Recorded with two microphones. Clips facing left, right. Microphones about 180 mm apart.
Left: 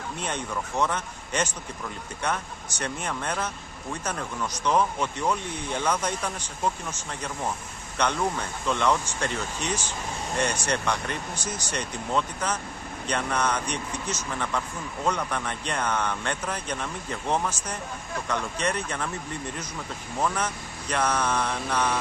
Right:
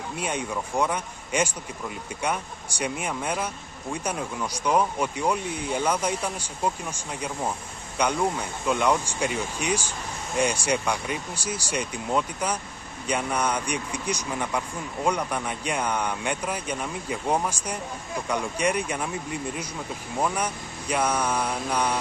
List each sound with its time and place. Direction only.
0.2 s speech: 10° right (ahead or behind)